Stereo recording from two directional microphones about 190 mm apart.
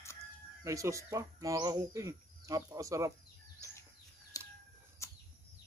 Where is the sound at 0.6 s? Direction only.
15° right (ahead or behind).